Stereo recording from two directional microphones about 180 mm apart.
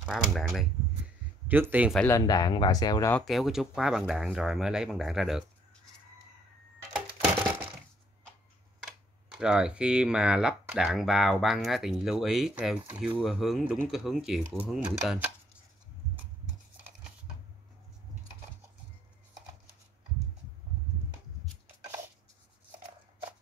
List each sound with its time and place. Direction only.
0.0 s speech: centre (ahead or behind)
1.5 s speech: 10° right (ahead or behind)
2.0 s speech: 20° left (ahead or behind)
3.1 s speech: centre (ahead or behind)
8.8 s speech: 5° right (ahead or behind)